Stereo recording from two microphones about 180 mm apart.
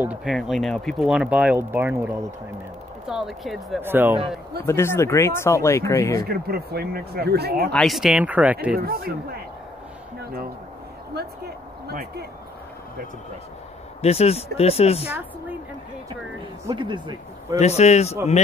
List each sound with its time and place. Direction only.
0.0 s speech: 5° right (ahead or behind)
3.8 s speech: 10° right (ahead or behind)
4.6 s speech: 15° left (ahead or behind)
6.2 s speech: 60° right (ahead or behind)
7.7 s speech: centre (ahead or behind)
8.7 s speech: 55° right (ahead or behind)
11.9 s speech: 60° right (ahead or behind)
14.0 s speech: 35° left (ahead or behind)
16.6 s speech: 25° right (ahead or behind)
17.6 s speech: 35° left (ahead or behind)